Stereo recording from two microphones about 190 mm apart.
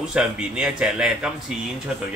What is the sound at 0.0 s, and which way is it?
A man's voice, 5° right (ahead or behind).